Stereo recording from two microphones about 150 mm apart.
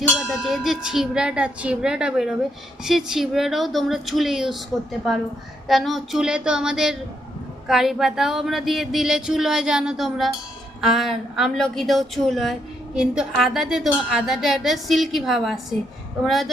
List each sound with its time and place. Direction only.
0.2 s a woman's voice: centre (ahead or behind)
5.6 s a woman's voice: centre (ahead or behind)